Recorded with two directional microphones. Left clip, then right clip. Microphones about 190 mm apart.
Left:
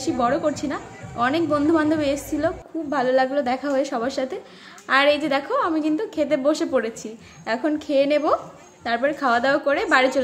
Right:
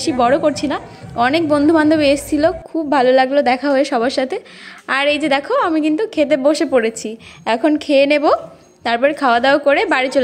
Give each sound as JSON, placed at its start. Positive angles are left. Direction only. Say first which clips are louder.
{"t": 0.0, "sound": "a woman's voice", "louder": "right 7 dB", "side_deg": -30}